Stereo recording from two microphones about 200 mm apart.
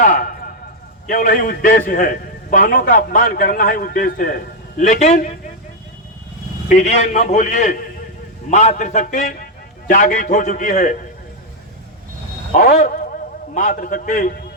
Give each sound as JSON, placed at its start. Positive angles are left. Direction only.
{"t": 0.0, "sound": "a sound", "side_deg": 40}
{"t": 1.0, "sound": "a man's voice", "side_deg": 45}
{"t": 6.7, "sound": "a man's voice", "side_deg": 35}
{"t": 12.5, "sound": "a man's voice", "side_deg": 40}